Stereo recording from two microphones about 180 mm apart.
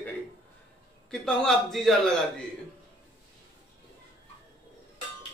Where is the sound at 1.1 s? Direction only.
Centre (ahead or behind).